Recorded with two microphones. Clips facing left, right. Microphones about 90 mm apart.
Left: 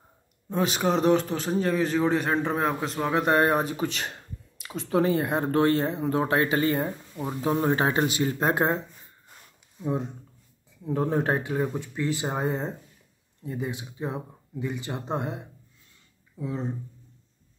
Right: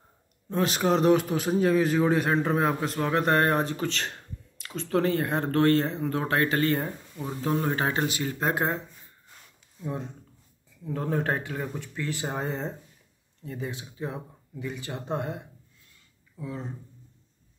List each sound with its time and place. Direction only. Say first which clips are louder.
0.5 s a man's voice: even; 5° left (ahead or behind); by 8.7 s 25° left (ahead or behind)
10.9 s speech: left 3 dB; 20° left (ahead or behind)